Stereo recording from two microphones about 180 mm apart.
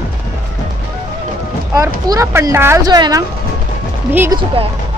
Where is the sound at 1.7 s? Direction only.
15° right (ahead or behind).